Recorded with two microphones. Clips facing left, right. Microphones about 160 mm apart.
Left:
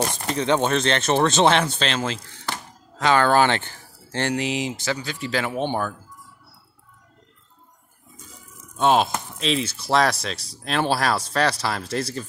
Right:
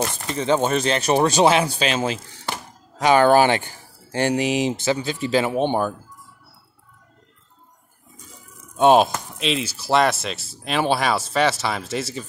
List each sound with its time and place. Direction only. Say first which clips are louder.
0.4 s speech: right 1 dB; 5° right (ahead or behind)
8.7 s speech: right 4 dB; 15° right (ahead or behind)
9.4 s speech: even; centre (ahead or behind)